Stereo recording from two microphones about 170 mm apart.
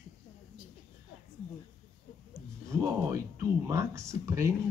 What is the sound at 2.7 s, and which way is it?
Speech, 20° right (ahead or behind).